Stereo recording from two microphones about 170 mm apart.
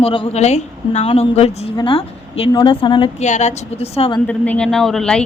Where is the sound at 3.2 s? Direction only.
45° left (ahead or behind).